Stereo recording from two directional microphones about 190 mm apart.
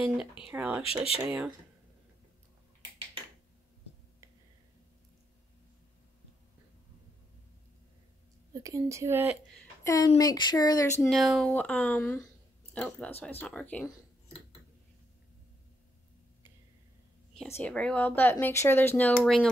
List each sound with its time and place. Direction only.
0.4 s speech: 5° right (ahead or behind)
0.8 s speech: 30° left (ahead or behind)
1.2 s speech: 10° right (ahead or behind)
8.5 s speech: 15° right (ahead or behind)
9.8 s speech: 15° left (ahead or behind)
11.0 s speech: centre (ahead or behind)
17.5 s speech: 10° left (ahead or behind)